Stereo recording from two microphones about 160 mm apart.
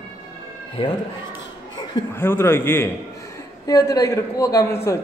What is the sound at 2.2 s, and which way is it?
A man's voice, 15° left (ahead or behind).